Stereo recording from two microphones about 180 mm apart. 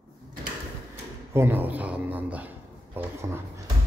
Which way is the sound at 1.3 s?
10° right (ahead or behind).